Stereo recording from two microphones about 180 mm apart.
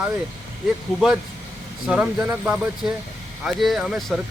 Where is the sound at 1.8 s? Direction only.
5° right (ahead or behind).